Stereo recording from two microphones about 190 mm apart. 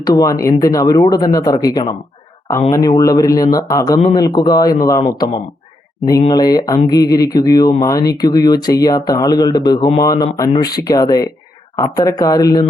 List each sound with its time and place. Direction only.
0.0 s speech: 20° left (ahead or behind)